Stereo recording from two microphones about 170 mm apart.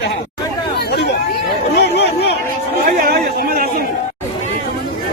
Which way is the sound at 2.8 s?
55° right (ahead or behind).